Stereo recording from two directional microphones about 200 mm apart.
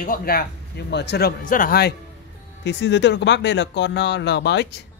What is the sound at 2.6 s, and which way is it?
Speech, 60° left (ahead or behind).